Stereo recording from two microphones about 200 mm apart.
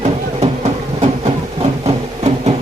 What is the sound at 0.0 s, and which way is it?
Music, 30° right (ahead or behind).